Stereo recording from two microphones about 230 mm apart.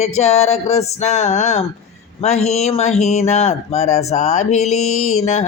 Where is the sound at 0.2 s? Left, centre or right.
Left.